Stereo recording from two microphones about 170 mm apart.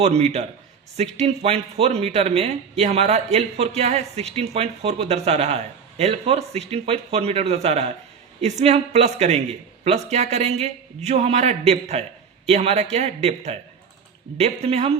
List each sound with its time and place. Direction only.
0.0 s speech: 40° right (ahead or behind)